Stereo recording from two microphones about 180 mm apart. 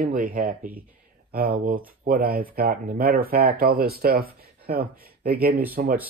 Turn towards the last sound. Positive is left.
turn(degrees=-55)  # may be behind; listen again after turning